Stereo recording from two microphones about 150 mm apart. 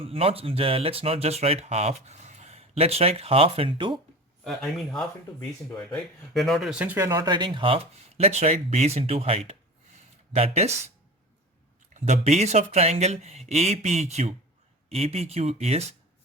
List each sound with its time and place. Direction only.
0.0 s speech: 40° right (ahead or behind)
4.4 s speech: centre (ahead or behind); by 9.4 s 40° right (ahead or behind)
9.5 s a sound: 45° right (ahead or behind)
11.9 s speech: 50° right (ahead or behind)